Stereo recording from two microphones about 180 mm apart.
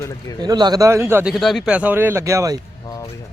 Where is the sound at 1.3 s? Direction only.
Centre (ahead or behind); by 2.6 s 15° right (ahead or behind).